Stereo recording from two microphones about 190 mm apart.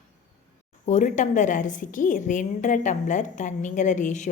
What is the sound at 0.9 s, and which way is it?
A woman's voice, 40° left (ahead or behind).